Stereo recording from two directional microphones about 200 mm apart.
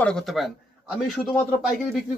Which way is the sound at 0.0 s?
Centre (ahead or behind).